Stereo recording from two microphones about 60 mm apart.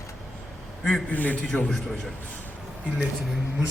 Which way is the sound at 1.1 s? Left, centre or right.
Left.